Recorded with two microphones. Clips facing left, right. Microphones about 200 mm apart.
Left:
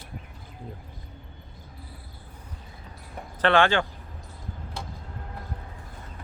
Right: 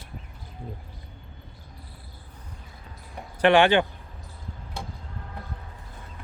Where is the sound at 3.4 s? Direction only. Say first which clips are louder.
Right 3 dB; 15° right (ahead or behind).